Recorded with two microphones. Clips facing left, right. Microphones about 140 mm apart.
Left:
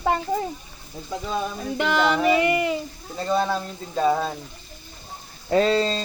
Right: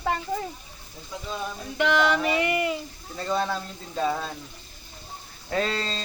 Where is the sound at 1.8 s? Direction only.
35° left (ahead or behind).